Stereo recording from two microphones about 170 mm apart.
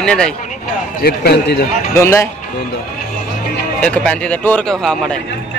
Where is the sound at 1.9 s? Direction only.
15° left (ahead or behind).